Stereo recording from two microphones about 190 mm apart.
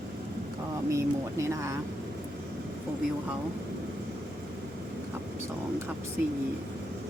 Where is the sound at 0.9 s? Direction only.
15° right (ahead or behind).